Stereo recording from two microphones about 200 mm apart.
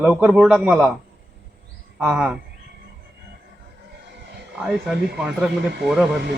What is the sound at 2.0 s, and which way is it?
Speech, 5° right (ahead or behind).